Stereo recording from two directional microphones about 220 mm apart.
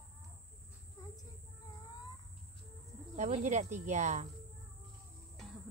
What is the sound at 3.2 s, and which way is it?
Cricket, 35° right (ahead or behind).